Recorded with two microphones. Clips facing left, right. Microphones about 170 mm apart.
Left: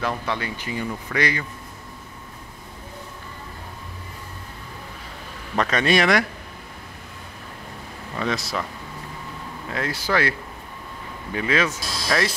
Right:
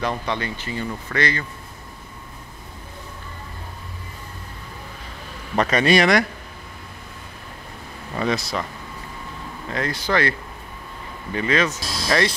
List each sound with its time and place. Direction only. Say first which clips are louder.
0.0 s speech: right 1 dB; 5° left (ahead or behind)
5.6 s speech: right 3 dB; centre (ahead or behind)
8.2 s speech: right 2 dB; centre (ahead or behind)
9.7 s speech: right 1 dB; 5° left (ahead or behind)
11.3 s speech: right 1 dB; 5° left (ahead or behind)